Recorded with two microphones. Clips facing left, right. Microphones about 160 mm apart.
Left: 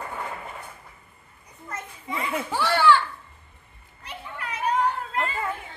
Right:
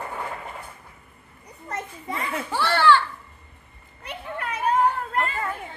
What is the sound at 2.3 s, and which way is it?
Speech, 15° left (ahead or behind).